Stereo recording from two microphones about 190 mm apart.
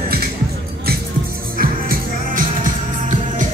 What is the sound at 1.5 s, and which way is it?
Music, 50° right (ahead or behind).